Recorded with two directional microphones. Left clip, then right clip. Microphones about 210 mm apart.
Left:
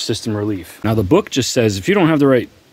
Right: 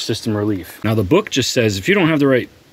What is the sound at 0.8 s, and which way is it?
Speech, 25° left (ahead or behind).